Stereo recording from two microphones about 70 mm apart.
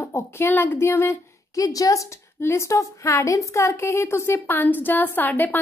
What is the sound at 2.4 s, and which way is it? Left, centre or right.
A woman's voice, left.